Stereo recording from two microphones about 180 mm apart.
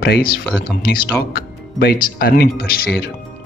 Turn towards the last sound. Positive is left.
turn(degrees=60)  # may be behind; listen again after turning